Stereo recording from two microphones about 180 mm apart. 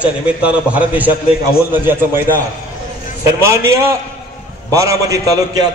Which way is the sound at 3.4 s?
15° right (ahead or behind).